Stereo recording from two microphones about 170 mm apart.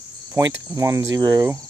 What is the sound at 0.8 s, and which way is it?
Speech, 20° right (ahead or behind).